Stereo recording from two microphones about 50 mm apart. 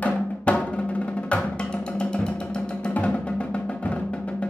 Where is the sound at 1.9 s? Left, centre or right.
Left.